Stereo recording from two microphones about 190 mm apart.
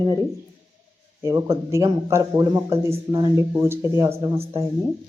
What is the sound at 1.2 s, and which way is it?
A man's voice, 15° right (ahead or behind).